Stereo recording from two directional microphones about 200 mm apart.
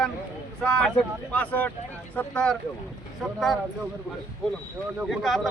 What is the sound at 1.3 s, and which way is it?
Speech, 5° left (ahead or behind).